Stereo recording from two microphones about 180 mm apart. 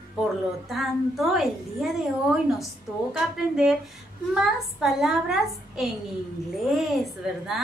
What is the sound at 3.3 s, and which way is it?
A woman's voice, centre (ahead or behind).